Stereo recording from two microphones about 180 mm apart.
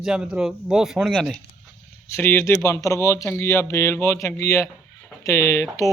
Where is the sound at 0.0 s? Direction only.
5° right (ahead or behind).